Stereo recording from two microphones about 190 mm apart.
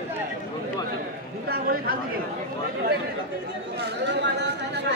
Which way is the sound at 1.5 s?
50° right (ahead or behind).